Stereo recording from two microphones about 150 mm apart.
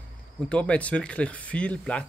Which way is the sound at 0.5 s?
10° left (ahead or behind).